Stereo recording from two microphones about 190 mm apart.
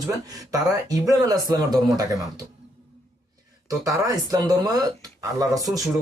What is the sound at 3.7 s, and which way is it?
Speech, 15° right (ahead or behind).